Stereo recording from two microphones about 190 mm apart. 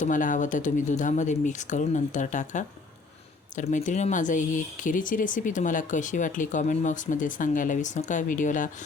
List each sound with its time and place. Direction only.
0.0 s speech: 45° left (ahead or behind)